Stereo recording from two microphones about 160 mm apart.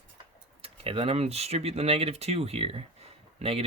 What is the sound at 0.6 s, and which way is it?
Speech, 35° right (ahead or behind).